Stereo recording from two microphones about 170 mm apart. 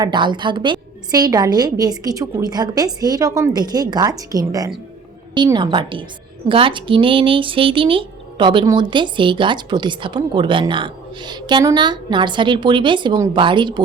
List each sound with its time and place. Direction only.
0.0 s speech: 25° right (ahead or behind)